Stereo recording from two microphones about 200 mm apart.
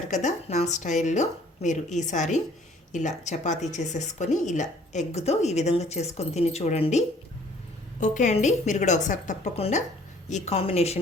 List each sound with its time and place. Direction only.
0.1 s a woman's voice: 35° left (ahead or behind)
8.0 s a woman's voice: 40° left (ahead or behind)